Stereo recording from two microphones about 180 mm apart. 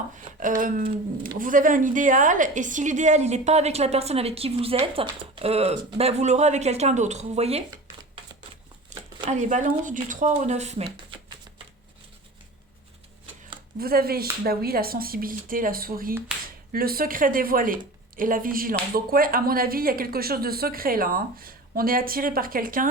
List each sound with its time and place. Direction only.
0.3 s a woman's voice: 50° right (ahead or behind)
9.3 s a woman's voice: 40° right (ahead or behind)
13.7 s speech: 55° right (ahead or behind)